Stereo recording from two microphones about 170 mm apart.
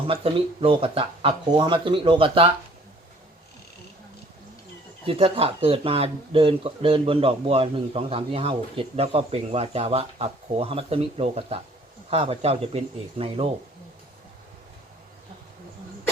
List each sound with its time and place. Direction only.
0.1 s speech: 35° right (ahead or behind)
5.0 s speech: 35° right (ahead or behind)